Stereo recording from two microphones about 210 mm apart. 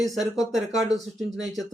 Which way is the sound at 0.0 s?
Centre (ahead or behind).